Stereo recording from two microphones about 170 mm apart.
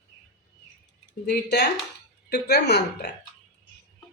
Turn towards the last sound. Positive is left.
turn(degrees=80)